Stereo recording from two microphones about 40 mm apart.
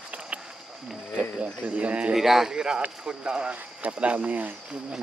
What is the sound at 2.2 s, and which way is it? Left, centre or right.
Speech, centre.